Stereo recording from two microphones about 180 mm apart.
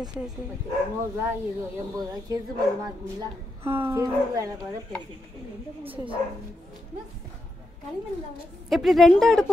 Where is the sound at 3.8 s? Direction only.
15° right (ahead or behind).